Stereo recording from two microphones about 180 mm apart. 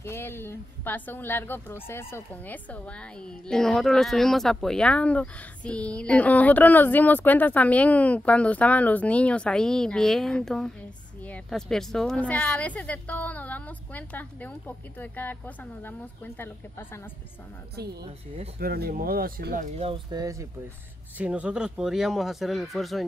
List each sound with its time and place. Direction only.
0.0 s speech: 15° left (ahead or behind)
18.6 s speech: 55° right (ahead or behind)
19.9 s speech: 20° right (ahead or behind)
21.2 s speech: 5° right (ahead or behind)